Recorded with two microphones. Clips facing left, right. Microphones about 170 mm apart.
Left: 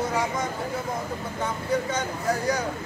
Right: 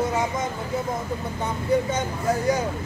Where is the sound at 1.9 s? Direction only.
20° right (ahead or behind).